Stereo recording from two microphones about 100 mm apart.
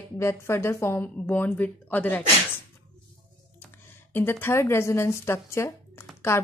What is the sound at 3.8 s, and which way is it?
A woman's voice, 25° left (ahead or behind).